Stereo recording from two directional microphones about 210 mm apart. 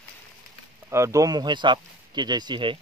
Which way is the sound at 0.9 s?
15° right (ahead or behind).